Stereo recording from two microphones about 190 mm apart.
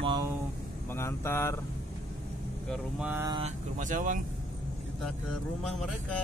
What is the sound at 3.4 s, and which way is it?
Speech, 40° right (ahead or behind).